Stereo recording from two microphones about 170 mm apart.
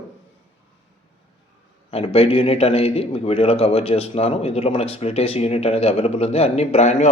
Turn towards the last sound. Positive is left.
turn(degrees=45)  # may be behind; listen again after turning